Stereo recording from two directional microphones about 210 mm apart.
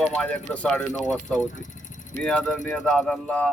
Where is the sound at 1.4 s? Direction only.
35° left (ahead or behind).